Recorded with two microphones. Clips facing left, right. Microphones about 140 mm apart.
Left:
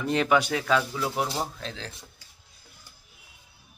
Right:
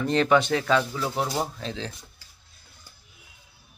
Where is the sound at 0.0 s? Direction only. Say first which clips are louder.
Right 2 dB; 5° left (ahead or behind).